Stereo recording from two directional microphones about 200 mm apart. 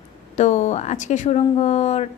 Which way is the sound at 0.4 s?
35° left (ahead or behind).